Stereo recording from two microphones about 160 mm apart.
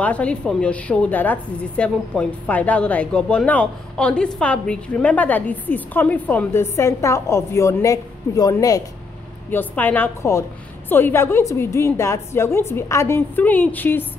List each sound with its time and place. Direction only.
0.0 s a woman's voice: 10° left (ahead or behind)
9.5 s a woman's voice: 10° left (ahead or behind)